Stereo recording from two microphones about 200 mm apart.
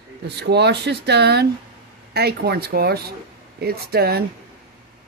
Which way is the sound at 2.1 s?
55° right (ahead or behind).